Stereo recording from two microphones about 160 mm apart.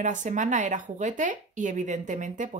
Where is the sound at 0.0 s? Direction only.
50° right (ahead or behind).